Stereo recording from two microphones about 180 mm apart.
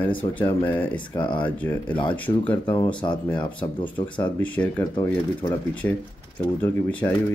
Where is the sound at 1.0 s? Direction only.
25° left (ahead or behind).